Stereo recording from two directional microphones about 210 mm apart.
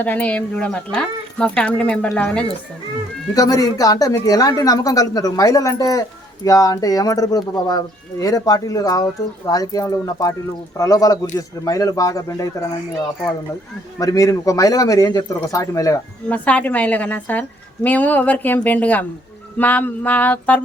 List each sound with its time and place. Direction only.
0.0 s speech: 5° left (ahead or behind)
3.3 s speech: 15° left (ahead or behind)
14.0 s speech: 15° left (ahead or behind)